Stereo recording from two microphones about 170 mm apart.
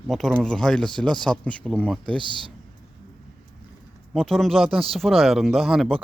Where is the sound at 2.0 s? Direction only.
30° right (ahead or behind).